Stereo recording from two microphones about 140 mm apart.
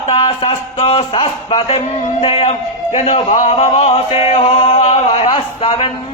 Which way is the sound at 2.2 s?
45° left (ahead or behind).